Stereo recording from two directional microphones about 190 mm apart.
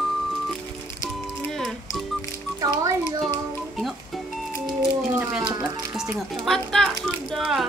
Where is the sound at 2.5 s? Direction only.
20° right (ahead or behind).